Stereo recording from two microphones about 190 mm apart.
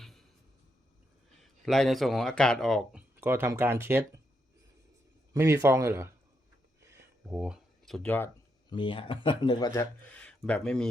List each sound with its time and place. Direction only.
0.0 s a sound: centre (ahead or behind)
1.4 s speech: centre (ahead or behind)
3.2 s speech: 10° right (ahead or behind)
5.3 s speech: 15° right (ahead or behind)
7.3 s speech: 5° right (ahead or behind)
8.7 s speech: 25° left (ahead or behind)
10.1 s speech: 5° left (ahead or behind)